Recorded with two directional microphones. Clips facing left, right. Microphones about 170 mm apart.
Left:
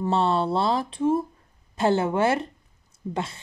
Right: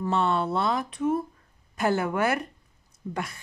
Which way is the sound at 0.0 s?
30° left (ahead or behind).